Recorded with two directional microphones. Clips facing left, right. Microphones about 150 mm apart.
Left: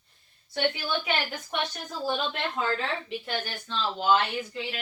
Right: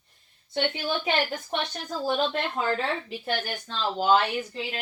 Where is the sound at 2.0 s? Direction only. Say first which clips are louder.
Right 3 dB; 35° right (ahead or behind).